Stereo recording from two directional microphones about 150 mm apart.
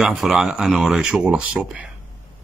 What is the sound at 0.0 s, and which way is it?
Speech, 5° right (ahead or behind).